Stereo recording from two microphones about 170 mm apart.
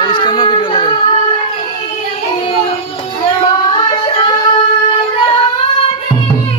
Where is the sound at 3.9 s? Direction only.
30° left (ahead or behind).